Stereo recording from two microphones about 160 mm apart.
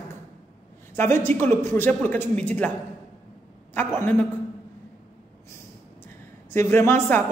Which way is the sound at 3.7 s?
15° left (ahead or behind).